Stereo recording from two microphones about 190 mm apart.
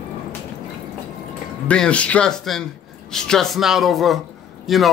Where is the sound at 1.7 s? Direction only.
5° left (ahead or behind).